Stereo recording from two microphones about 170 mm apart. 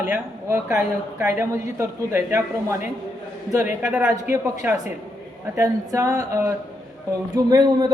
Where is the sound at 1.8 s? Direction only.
15° right (ahead or behind).